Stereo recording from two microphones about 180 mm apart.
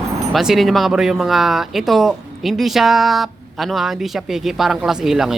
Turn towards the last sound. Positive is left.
turn(degrees=0)  # may be behind; listen again after turning